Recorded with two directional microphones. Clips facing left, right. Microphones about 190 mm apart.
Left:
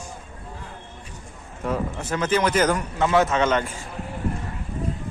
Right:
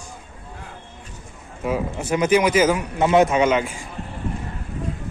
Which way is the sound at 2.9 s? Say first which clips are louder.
Right 4 dB; 20° right (ahead or behind).